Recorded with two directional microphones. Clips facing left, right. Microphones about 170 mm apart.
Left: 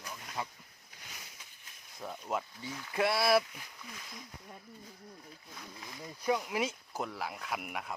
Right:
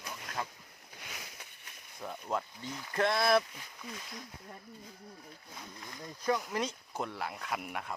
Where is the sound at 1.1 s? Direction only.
65° right (ahead or behind).